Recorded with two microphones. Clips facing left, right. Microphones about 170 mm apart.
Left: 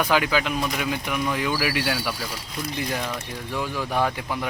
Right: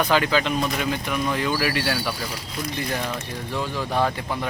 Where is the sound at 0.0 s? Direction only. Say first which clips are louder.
Right 1 dB; 10° left (ahead or behind).